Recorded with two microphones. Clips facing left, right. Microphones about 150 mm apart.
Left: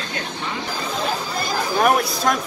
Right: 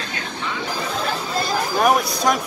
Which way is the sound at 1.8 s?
Centre (ahead or behind).